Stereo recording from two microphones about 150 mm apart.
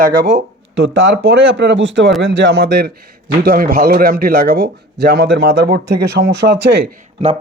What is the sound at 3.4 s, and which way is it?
A man's voice, 70° right (ahead or behind).